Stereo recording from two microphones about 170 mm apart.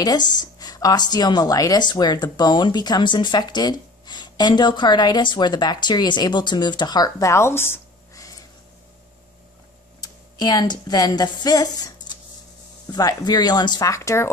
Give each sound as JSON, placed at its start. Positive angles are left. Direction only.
{"t": 0.0, "sound": "speech", "side_deg": 25}
{"t": 9.9, "sound": "speech", "side_deg": 25}
{"t": 12.9, "sound": "speech", "side_deg": 25}